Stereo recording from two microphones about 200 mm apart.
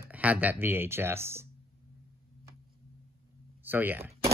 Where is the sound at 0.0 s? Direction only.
5° right (ahead or behind).